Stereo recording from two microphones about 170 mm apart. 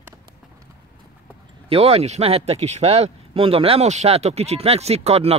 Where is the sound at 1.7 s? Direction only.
35° right (ahead or behind).